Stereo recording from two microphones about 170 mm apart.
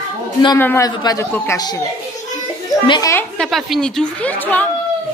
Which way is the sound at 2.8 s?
25° left (ahead or behind).